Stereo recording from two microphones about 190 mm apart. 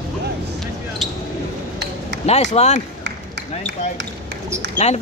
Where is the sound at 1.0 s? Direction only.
Centre (ahead or behind).